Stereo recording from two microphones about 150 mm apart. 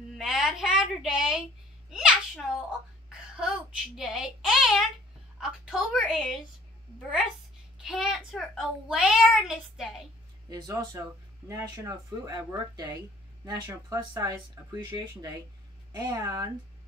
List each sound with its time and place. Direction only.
0.2 s a sound: 5° right (ahead or behind)
5.4 s a child's voice: 5° right (ahead or behind)
11.4 s speech: 20° right (ahead or behind)